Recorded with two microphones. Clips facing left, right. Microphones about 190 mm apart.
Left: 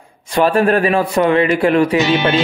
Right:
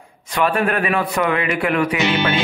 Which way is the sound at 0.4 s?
35° left (ahead or behind).